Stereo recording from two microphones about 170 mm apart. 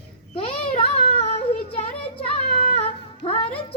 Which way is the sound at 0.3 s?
30° left (ahead or behind).